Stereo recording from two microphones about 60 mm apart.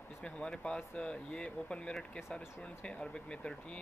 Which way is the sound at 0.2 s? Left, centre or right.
Centre.